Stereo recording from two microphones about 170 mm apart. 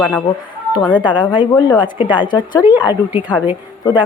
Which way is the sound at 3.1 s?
10° right (ahead or behind).